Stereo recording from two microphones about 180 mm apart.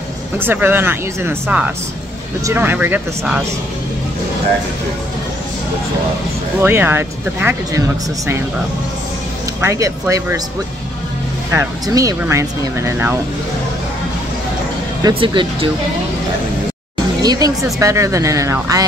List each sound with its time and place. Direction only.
0.4 s speech: 10° right (ahead or behind)
6.6 s speech: 10° right (ahead or behind)
9.6 s speech: 15° right (ahead or behind)
11.5 s speech: 20° right (ahead or behind)
15.0 s speech: 30° right (ahead or behind)
17.2 s speech: 20° right (ahead or behind)